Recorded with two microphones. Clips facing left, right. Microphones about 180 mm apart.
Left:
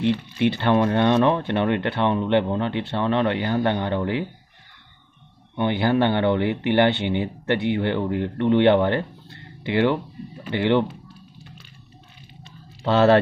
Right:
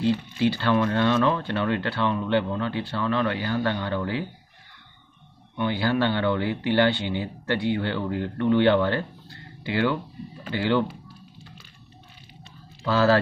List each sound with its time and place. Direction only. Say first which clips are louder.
0.4 s speech: left 4 dB; 20° left (ahead or behind)
5.6 s speech: left 4 dB; 20° left (ahead or behind)
12.8 s speech: left 4 dB; 25° left (ahead or behind)